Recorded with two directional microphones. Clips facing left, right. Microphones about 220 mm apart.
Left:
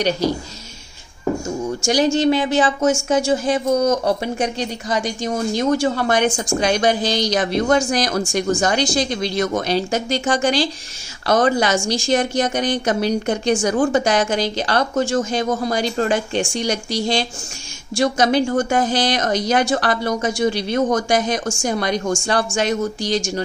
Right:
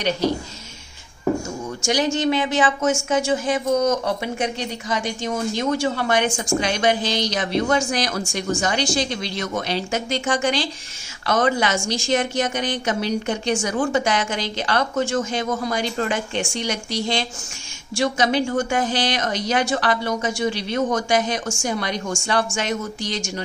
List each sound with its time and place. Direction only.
1.9 s a woman's voice: 35° left (ahead or behind)